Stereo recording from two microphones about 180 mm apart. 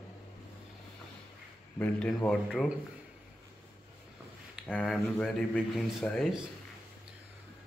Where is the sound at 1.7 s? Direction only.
10° left (ahead or behind).